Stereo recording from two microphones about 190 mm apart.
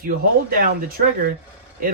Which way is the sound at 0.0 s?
50° right (ahead or behind).